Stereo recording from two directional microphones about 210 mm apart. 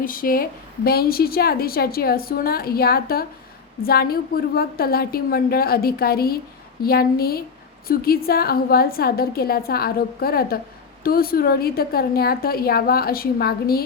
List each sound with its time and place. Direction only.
0.0 s a woman's voice: 40° left (ahead or behind)